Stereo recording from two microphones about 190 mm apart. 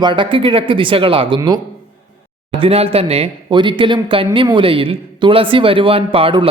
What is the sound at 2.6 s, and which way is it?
A man's voice, 30° right (ahead or behind).